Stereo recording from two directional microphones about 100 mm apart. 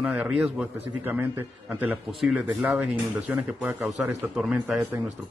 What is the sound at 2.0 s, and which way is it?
Speech, 5° right (ahead or behind).